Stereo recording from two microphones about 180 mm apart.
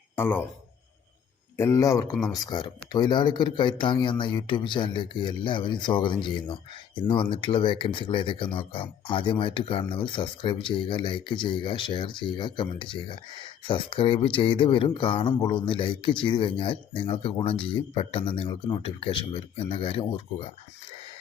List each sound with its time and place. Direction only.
0.2 s speech: 10° left (ahead or behind)
1.5 s speech: 15° left (ahead or behind); by 20.5 s 30° left (ahead or behind)